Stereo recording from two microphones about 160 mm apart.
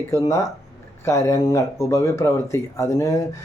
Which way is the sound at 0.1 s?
20° left (ahead or behind).